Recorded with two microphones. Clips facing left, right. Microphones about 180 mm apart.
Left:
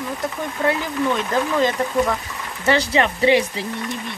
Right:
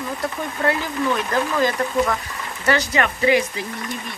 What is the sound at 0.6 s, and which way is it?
Speech, 20° left (ahead or behind).